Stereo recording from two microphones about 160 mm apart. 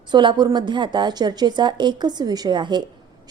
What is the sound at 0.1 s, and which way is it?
A woman's voice, 30° right (ahead or behind).